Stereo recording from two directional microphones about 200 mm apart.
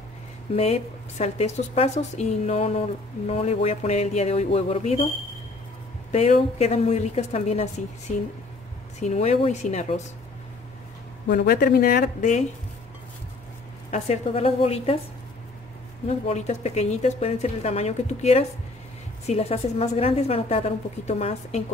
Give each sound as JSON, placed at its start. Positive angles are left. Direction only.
{"t": 0.6, "sound": "a woman's voice", "side_deg": 30}
{"t": 6.1, "sound": "a woman's voice", "side_deg": 30}
{"t": 9.0, "sound": "a woman's voice", "side_deg": 35}
{"t": 11.2, "sound": "speech", "side_deg": 50}
{"t": 13.8, "sound": "a woman's voice", "side_deg": 35}
{"t": 16.3, "sound": "a woman's voice", "side_deg": 35}